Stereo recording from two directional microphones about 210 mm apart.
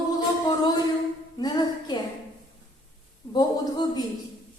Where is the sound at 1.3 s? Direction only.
20° left (ahead or behind).